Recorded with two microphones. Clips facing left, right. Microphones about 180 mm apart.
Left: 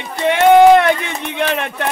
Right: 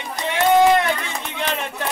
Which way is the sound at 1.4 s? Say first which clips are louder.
Left 7 dB; 65° left (ahead or behind).